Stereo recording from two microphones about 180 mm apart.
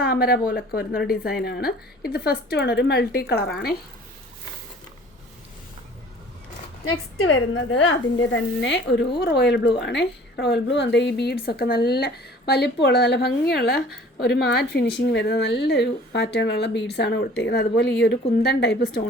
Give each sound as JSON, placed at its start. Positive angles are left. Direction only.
{"t": 0.0, "sound": "a woman's voice", "side_deg": 55}
{"t": 7.3, "sound": "a woman's voice", "side_deg": 90}
{"t": 8.3, "sound": "speech", "side_deg": 80}
{"t": 9.1, "sound": "a woman's voice", "side_deg": 65}
{"t": 11.4, "sound": "a woman's voice", "side_deg": 60}